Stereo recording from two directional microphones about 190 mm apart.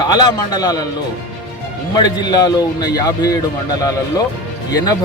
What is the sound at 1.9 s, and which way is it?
A man's voice, 20° left (ahead or behind).